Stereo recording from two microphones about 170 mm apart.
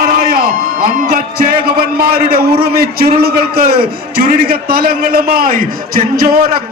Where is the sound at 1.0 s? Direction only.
60° right (ahead or behind).